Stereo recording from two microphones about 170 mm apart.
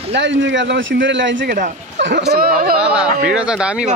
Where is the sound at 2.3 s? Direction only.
60° right (ahead or behind).